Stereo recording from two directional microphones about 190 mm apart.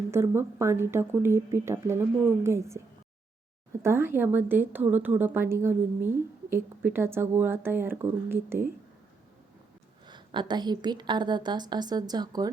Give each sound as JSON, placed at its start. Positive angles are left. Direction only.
{"t": 0.1, "sound": "speech", "side_deg": -15}
{"t": 10.1, "sound": "a woman's voice", "side_deg": -25}